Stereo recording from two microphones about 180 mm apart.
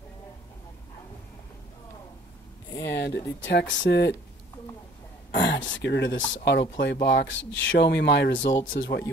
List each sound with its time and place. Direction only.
2.8 s speech: 70° left (ahead or behind)
5.3 s speech: 75° left (ahead or behind)
6.8 s speech: 70° left (ahead or behind)
8.7 s speech: 70° left (ahead or behind)